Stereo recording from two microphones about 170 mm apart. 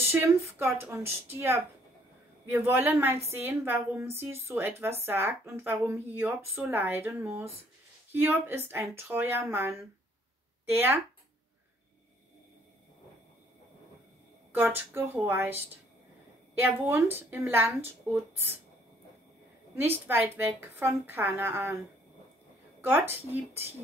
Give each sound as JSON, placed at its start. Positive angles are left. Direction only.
{"t": 0.1, "sound": "speech", "side_deg": -15}
{"t": 14.5, "sound": "speech", "side_deg": -15}
{"t": 20.1, "sound": "speech", "side_deg": -15}
{"t": 22.8, "sound": "speech", "side_deg": -15}